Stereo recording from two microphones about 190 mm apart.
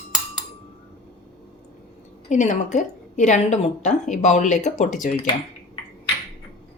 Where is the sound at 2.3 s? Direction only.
40° left (ahead or behind).